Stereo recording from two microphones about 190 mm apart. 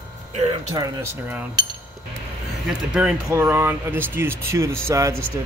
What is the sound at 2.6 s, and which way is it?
Speech, 5° right (ahead or behind).